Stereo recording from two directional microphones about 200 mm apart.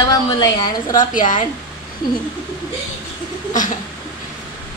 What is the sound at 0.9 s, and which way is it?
Speech, 40° left (ahead or behind).